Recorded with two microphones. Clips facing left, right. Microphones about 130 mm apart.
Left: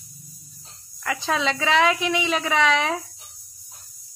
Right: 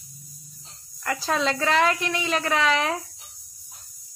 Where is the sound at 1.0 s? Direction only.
Centre (ahead or behind).